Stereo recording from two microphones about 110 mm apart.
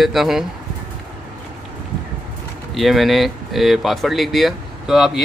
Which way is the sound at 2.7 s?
Centre (ahead or behind).